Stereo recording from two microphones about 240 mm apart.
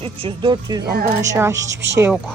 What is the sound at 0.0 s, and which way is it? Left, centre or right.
Speech, right.